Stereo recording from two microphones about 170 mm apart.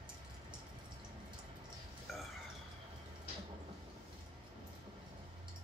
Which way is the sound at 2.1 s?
Centre (ahead or behind).